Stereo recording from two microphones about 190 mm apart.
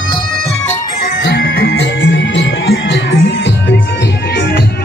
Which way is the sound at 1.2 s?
60° left (ahead or behind).